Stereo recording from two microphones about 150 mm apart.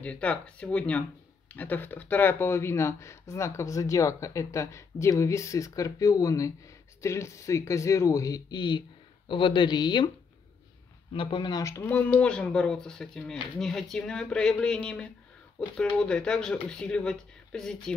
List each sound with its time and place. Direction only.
0.0 s speech: 10° left (ahead or behind); by 10.1 s 30° left (ahead or behind)
11.1 s speech: 35° left (ahead or behind); by 17.9 s 5° left (ahead or behind)